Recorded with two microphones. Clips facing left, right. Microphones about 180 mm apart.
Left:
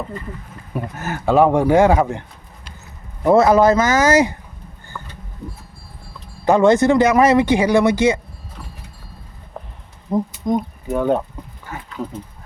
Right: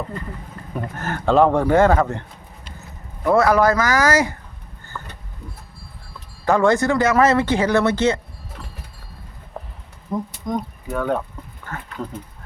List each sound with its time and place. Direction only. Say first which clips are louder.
0.7 s speech: left 1 dB; 10° left (ahead or behind)
3.2 s speech: left 4 dB; 25° left (ahead or behind)
4.9 s a sound: even; 10° left (ahead or behind)
6.4 s speech: left 4 dB; 20° left (ahead or behind)
10.1 s speech: left 5 dB; 25° left (ahead or behind)